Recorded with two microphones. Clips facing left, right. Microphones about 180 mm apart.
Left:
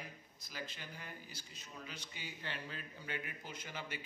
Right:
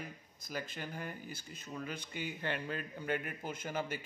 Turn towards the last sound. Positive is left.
turn(degrees=-45)  # may be behind; listen again after turning